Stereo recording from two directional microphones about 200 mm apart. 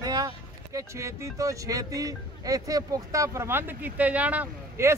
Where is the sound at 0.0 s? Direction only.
20° right (ahead or behind).